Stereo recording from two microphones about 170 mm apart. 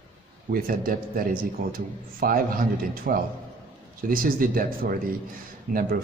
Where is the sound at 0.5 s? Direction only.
55° right (ahead or behind).